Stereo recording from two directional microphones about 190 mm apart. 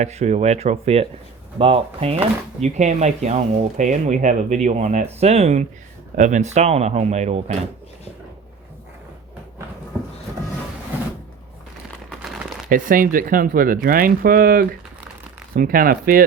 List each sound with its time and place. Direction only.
0.0 s speech: 35° right (ahead or behind)
12.2 s crumpling: centre (ahead or behind)
12.6 s speech: 45° right (ahead or behind)